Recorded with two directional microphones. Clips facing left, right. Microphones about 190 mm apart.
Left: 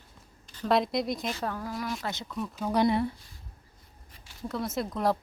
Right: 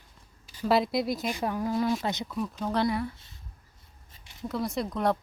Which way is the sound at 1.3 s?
15° right (ahead or behind).